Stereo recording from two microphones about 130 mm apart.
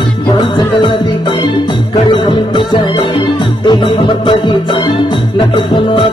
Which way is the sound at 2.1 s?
35° left (ahead or behind).